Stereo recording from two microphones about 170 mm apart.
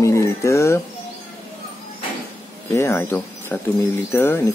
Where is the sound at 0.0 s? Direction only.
15° left (ahead or behind).